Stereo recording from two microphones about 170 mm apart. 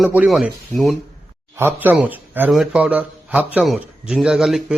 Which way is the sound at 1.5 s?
10° right (ahead or behind).